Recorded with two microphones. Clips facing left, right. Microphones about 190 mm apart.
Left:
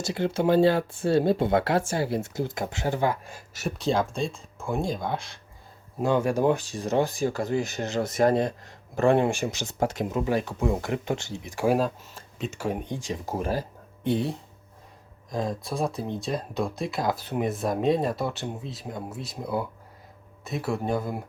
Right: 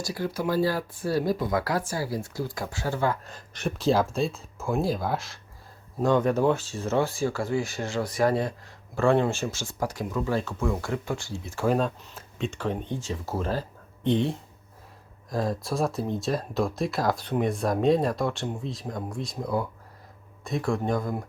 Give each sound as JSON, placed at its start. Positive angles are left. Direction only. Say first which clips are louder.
{"t": 0.0, "sound": "speech", "louder": "left 4 dB", "side_deg": 25}
{"t": 6.0, "sound": "speech", "louder": "right 1 dB", "side_deg": 10}